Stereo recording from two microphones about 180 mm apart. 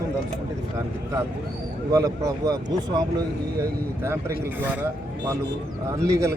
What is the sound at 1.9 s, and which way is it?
Speech, 20° right (ahead or behind).